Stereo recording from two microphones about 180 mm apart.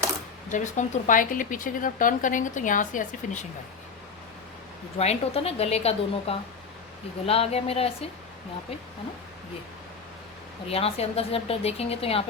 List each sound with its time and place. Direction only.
0.5 s a woman's voice: 45° left (ahead or behind)
4.9 s speech: 35° left (ahead or behind)
10.7 s speech: 35° left (ahead or behind)